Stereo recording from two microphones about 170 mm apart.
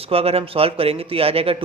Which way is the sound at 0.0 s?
35° right (ahead or behind).